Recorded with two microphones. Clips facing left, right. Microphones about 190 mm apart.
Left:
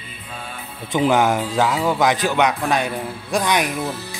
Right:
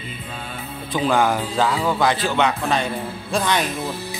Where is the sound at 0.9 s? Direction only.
20° left (ahead or behind).